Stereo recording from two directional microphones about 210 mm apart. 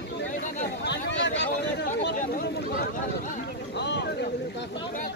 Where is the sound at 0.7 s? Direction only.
55° left (ahead or behind).